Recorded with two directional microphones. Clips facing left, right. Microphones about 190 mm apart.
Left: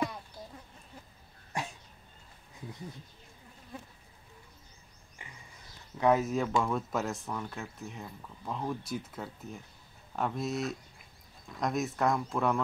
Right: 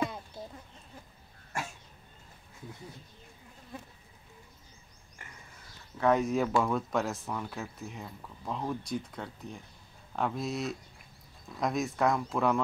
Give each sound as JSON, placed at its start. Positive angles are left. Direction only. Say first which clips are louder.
{"t": 1.5, "sound": "dog", "louder": "left 1 dB", "side_deg": 20}
{"t": 5.9, "sound": "speech", "louder": "even", "side_deg": 10}